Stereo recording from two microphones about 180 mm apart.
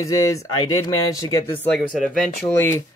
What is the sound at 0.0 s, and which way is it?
Speech, 15° left (ahead or behind).